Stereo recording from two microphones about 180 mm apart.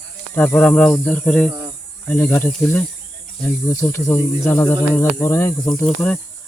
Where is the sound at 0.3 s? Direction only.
10° left (ahead or behind).